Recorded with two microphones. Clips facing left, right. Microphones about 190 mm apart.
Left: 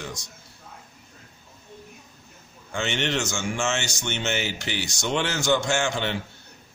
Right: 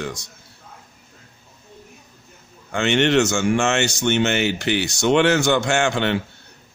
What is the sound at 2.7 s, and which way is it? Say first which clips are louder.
Speech: right 9 dB; 65° right (ahead or behind).